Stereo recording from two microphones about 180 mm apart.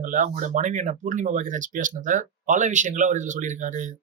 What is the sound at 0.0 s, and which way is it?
Speech, 45° right (ahead or behind).